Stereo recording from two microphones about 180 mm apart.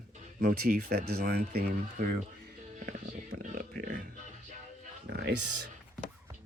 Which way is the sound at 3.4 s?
50° right (ahead or behind).